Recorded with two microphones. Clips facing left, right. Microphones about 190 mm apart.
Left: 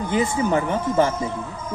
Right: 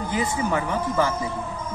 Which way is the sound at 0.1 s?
25° left (ahead or behind).